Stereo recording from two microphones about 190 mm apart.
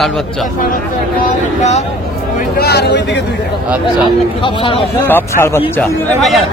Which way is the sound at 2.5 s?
55° left (ahead or behind).